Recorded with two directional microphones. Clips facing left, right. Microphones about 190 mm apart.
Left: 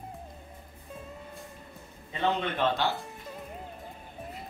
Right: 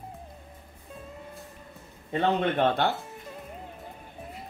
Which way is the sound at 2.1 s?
55° right (ahead or behind).